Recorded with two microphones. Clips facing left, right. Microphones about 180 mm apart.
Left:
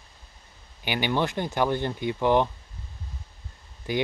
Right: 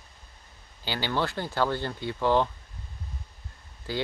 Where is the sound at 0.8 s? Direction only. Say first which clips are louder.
Left 3 dB; 15° left (ahead or behind).